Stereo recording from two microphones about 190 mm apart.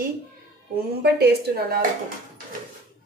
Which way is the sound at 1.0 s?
55° right (ahead or behind).